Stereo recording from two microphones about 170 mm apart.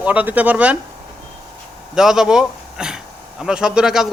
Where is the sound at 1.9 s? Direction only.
5° right (ahead or behind).